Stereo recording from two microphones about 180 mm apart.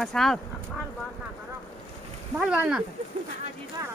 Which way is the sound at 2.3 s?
5° right (ahead or behind).